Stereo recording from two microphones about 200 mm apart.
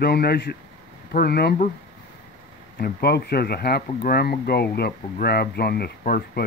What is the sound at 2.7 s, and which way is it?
Speech, 50° left (ahead or behind).